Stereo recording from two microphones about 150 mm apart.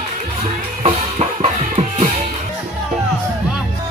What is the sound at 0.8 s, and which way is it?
Music, 45° right (ahead or behind).